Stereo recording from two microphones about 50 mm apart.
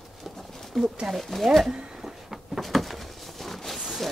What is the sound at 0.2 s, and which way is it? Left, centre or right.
Pigeon, centre.